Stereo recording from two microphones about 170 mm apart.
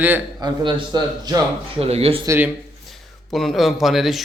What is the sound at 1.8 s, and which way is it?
Speech, 35° right (ahead or behind).